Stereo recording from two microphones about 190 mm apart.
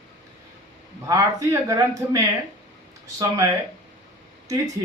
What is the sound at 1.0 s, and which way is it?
A man's voice, 15° right (ahead or behind).